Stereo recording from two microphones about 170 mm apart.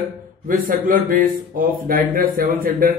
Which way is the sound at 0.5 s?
55° right (ahead or behind).